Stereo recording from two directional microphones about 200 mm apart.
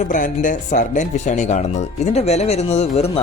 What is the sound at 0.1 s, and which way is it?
Speech, 40° left (ahead or behind).